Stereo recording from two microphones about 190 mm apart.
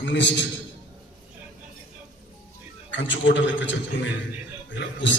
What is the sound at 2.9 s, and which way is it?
A man's voice, 75° left (ahead or behind).